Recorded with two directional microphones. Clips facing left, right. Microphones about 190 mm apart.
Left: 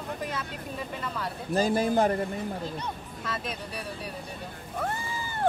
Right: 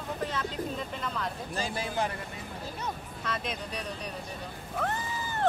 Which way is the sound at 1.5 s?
45° left (ahead or behind).